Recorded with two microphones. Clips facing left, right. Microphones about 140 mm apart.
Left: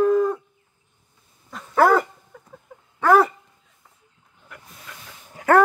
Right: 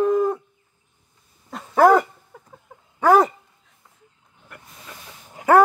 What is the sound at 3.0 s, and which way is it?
Dog, 20° right (ahead or behind).